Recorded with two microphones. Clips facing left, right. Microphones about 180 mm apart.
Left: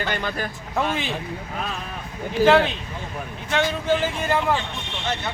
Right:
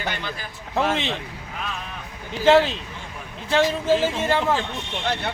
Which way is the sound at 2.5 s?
30° right (ahead or behind).